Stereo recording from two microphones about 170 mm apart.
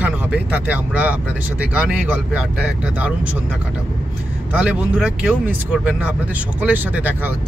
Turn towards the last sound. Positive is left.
turn(degrees=-10)  # may be behind; listen again after turning